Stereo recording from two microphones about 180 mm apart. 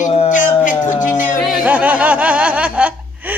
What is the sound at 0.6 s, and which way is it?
Music, 45° left (ahead or behind).